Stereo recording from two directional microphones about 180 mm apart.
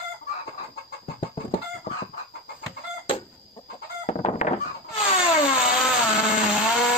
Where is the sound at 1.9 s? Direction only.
50° left (ahead or behind).